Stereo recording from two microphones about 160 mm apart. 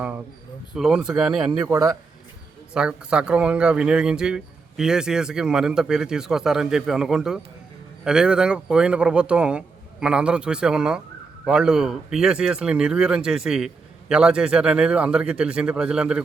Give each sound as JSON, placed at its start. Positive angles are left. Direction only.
{"t": 0.7, "sound": "speech", "side_deg": -5}
{"t": 1.6, "sound": "speech", "side_deg": -20}
{"t": 2.7, "sound": "speech", "side_deg": -5}